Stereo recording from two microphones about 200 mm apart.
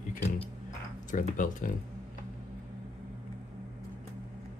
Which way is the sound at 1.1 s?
40° left (ahead or behind).